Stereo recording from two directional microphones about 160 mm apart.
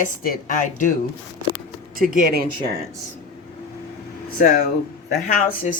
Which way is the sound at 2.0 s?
65° right (ahead or behind).